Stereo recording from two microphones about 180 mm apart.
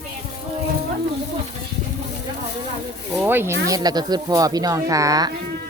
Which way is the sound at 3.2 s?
10° right (ahead or behind).